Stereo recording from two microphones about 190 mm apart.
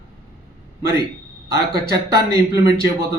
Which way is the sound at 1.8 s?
55° right (ahead or behind).